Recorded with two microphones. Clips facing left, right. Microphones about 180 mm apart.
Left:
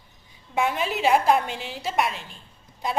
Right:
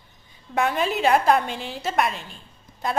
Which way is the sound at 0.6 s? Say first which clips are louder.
Right 2 dB; 10° left (ahead or behind).